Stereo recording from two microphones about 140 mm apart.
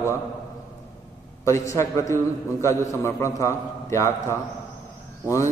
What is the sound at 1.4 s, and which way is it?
A man's voice, 20° left (ahead or behind).